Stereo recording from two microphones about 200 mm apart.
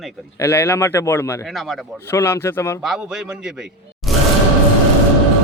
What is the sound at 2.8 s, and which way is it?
A man's voice, 5° right (ahead or behind).